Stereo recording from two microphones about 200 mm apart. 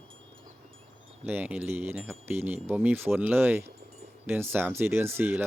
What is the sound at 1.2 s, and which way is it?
Speech, 10° right (ahead or behind).